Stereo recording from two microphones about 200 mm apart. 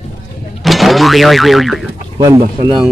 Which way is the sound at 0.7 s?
Centre (ahead or behind).